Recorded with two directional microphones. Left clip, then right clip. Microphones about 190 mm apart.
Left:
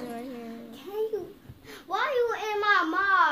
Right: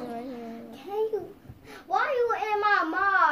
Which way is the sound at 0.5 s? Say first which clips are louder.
Right 4 dB; 25° left (ahead or behind).